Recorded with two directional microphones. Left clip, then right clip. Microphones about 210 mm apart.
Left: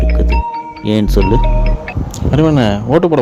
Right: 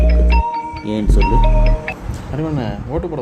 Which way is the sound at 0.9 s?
35° left (ahead or behind).